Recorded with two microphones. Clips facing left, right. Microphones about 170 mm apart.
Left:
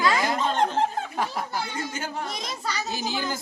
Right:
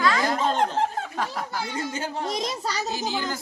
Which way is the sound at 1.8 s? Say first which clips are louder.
Right 2 dB; 30° right (ahead or behind).